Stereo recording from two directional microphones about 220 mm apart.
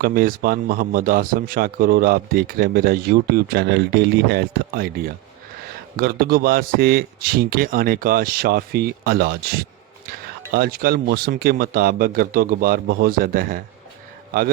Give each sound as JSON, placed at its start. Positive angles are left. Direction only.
{"t": 0.0, "sound": "speech", "side_deg": -40}